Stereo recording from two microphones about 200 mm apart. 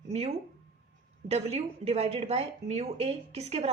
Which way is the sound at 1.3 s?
30° right (ahead or behind).